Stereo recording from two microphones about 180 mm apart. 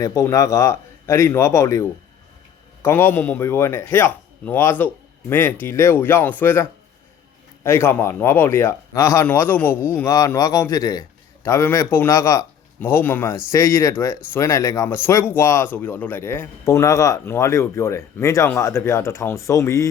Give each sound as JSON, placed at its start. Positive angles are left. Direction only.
{"t": 0.0, "sound": "speech", "side_deg": 15}